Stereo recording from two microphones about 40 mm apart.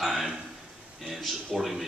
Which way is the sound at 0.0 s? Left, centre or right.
Centre.